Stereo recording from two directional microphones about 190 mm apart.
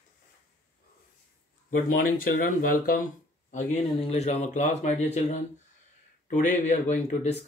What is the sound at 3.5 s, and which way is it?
A man's voice, 35° left (ahead or behind).